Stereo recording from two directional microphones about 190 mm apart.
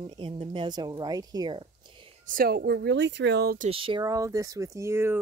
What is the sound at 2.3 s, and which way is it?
Speech, 50° right (ahead or behind).